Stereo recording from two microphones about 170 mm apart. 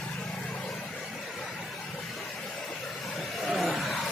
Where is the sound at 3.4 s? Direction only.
Centre (ahead or behind).